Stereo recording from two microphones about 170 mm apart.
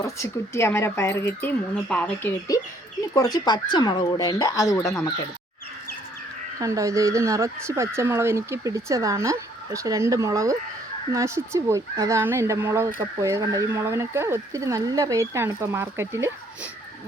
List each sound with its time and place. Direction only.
0.0 s speech: 15° left (ahead or behind)
3.2 s speech: 25° left (ahead or behind)
6.6 s speech: 20° right (ahead or behind)